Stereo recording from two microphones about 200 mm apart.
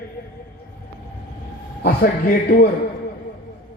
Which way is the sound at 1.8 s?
45° left (ahead or behind).